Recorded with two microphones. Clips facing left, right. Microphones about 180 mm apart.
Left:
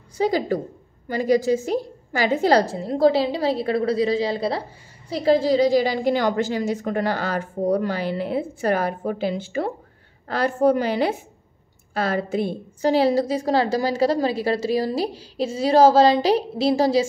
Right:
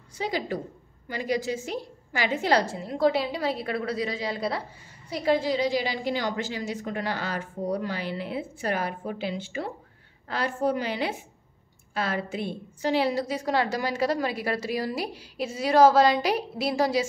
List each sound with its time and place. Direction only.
0.2 s a woman's voice: 40° left (ahead or behind)